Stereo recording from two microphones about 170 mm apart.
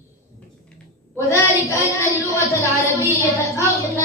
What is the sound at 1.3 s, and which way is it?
A woman's voice, 20° left (ahead or behind).